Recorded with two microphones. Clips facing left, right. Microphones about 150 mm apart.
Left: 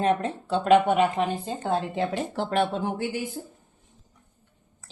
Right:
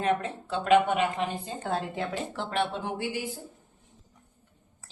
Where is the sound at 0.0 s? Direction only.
30° left (ahead or behind).